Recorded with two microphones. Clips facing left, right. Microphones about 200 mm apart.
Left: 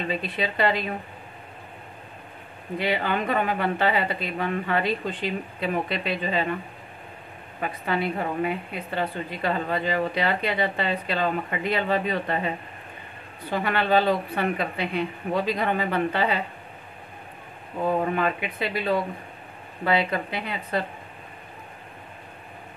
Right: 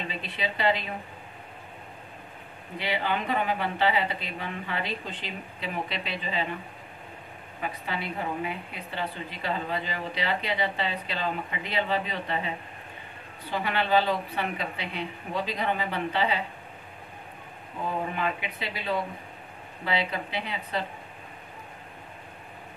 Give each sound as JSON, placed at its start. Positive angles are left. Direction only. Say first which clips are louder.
{"t": 0.1, "sound": "a woman's voice", "louder": "left 6 dB", "side_deg": 50}
{"t": 2.8, "sound": "a woman's voice", "louder": "left 4 dB", "side_deg": 50}
{"t": 7.6, "sound": "a woman's voice", "louder": "left 7 dB", "side_deg": 55}
{"t": 17.8, "sound": "a woman's voice", "louder": "left 6 dB", "side_deg": 55}